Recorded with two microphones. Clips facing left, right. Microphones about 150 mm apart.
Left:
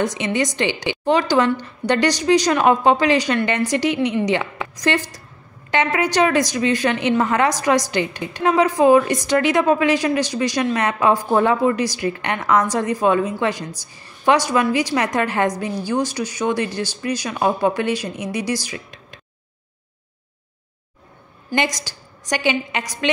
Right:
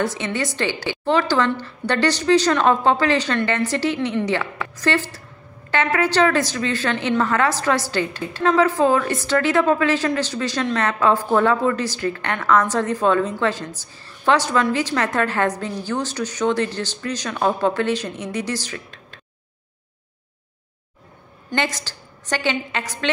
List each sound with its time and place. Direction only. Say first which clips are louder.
0.0 s a woman's voice: left 3 dB; 15° left (ahead or behind)
21.5 s a woman's voice: left 2 dB; 15° left (ahead or behind)